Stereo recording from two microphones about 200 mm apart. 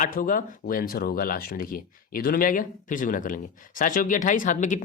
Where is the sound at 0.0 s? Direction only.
40° left (ahead or behind).